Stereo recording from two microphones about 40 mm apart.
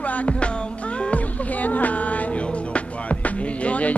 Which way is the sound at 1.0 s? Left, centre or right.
Left.